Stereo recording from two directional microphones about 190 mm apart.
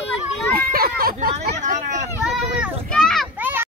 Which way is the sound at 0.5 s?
50° right (ahead or behind).